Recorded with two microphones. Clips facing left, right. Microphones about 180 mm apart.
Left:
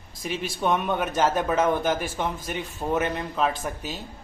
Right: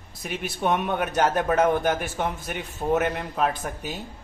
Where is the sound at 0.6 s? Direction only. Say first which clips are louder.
Even; 10° right (ahead or behind).